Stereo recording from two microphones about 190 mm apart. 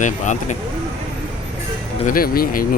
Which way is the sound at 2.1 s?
50° left (ahead or behind).